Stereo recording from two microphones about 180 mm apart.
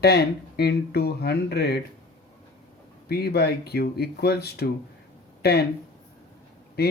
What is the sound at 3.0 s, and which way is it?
Speech, 60° left (ahead or behind).